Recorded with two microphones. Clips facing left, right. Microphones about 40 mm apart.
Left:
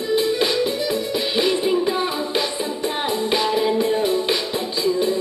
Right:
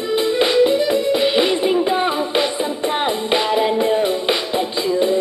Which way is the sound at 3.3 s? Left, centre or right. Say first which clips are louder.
Right 2 dB; right.